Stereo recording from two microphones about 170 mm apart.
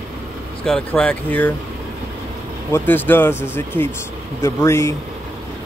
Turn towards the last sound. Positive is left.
turn(degrees=15)  # may be behind; listen again after turning